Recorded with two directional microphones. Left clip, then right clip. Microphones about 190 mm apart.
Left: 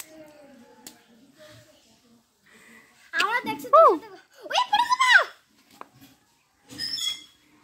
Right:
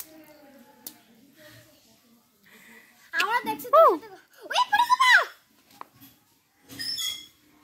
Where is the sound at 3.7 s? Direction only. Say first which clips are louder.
Left 2 dB; 10° left (ahead or behind).